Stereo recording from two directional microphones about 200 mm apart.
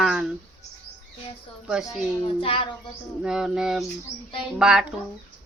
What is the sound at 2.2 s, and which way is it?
Speech, 25° left (ahead or behind).